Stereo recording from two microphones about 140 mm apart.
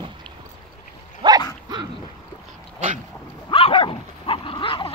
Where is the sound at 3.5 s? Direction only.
40° left (ahead or behind).